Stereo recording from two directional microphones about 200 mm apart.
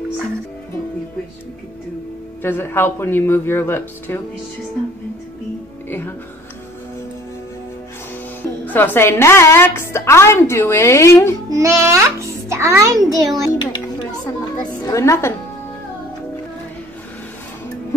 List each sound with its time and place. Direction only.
2.4 s a woman's voice: 10° left (ahead or behind)
5.9 s a woman's voice: 10° left (ahead or behind)
8.4 s a woman's voice: 10° left (ahead or behind)
11.5 s a child's voice: 15° right (ahead or behind)
13.5 s a sound: 20° left (ahead or behind)
14.6 s a woman's voice: 15° left (ahead or behind)